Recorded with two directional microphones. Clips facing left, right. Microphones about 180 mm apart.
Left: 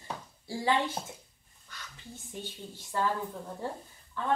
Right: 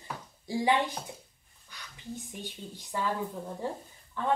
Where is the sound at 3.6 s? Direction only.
15° right (ahead or behind).